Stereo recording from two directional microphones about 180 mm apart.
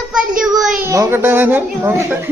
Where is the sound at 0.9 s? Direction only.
15° right (ahead or behind).